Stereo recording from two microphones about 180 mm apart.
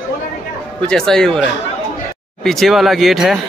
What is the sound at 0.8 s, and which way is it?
Speech, 5° left (ahead or behind).